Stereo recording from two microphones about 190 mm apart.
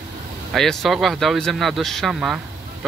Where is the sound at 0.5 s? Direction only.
Centre (ahead or behind).